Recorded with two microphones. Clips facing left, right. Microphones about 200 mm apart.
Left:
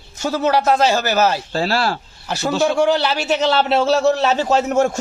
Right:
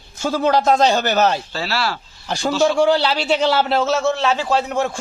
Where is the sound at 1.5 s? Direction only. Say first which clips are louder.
Left 4 dB; 45° left (ahead or behind).